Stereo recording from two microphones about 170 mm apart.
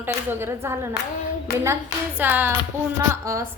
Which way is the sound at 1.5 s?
65° left (ahead or behind).